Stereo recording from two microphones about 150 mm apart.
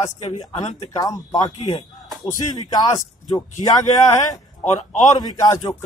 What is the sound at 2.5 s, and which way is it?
Speech, 25° left (ahead or behind).